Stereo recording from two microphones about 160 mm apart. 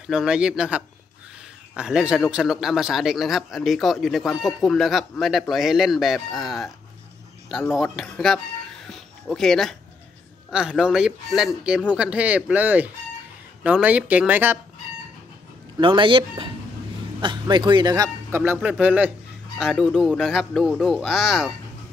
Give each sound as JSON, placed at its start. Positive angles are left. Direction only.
{"t": 0.0, "sound": "a man's voice", "side_deg": -5}
{"t": 7.7, "sound": "a man's voice", "side_deg": 0}
{"t": 15.8, "sound": "a man's voice", "side_deg": -30}